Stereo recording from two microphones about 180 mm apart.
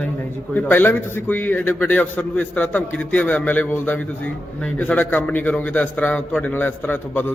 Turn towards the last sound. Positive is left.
turn(degrees=10)  # may be behind; listen again after turning